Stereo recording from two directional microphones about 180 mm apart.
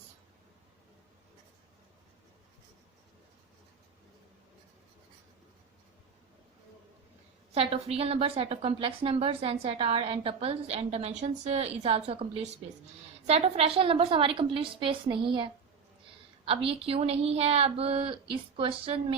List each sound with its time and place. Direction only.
7.5 s a woman's voice: 35° right (ahead or behind)
16.5 s a woman's voice: 30° right (ahead or behind)